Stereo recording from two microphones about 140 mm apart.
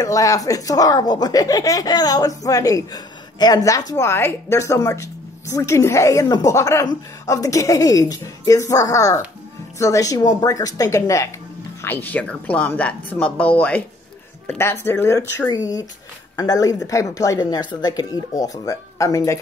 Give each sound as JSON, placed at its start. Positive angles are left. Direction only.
{"t": 0.0, "sound": "a woman's voice", "side_deg": 25}